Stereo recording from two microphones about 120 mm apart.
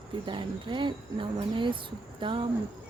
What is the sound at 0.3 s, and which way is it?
Speech, 40° right (ahead or behind).